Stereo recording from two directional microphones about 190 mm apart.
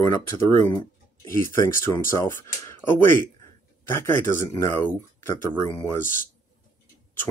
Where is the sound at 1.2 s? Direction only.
15° left (ahead or behind).